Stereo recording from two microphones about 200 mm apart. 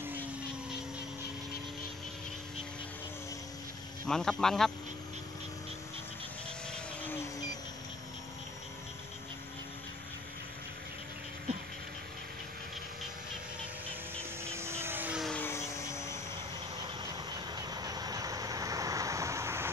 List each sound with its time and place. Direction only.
4.1 s speech: centre (ahead or behind)
6.7 s vehicle: 10° left (ahead or behind)
14.4 s vehicle: 15° right (ahead or behind); by 16.2 s 15° left (ahead or behind)
16.8 s vehicle: 20° right (ahead or behind)